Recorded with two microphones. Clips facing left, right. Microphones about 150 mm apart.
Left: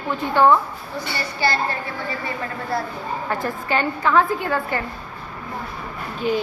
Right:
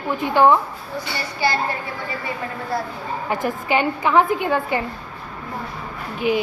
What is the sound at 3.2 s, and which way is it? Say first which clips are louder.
A woman's voice: right 3 dB; 15° right (ahead or behind).